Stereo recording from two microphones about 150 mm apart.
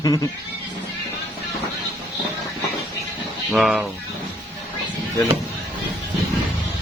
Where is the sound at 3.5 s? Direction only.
Centre (ahead or behind).